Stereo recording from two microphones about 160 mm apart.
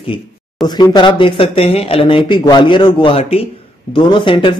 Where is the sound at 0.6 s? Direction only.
Centre (ahead or behind).